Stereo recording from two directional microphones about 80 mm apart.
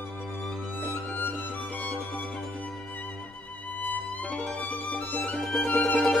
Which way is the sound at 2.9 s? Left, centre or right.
Centre.